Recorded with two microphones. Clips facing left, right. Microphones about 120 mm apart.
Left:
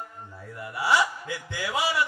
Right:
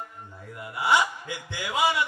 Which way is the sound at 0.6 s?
20° right (ahead or behind).